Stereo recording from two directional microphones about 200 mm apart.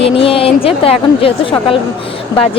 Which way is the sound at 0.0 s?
25° left (ahead or behind).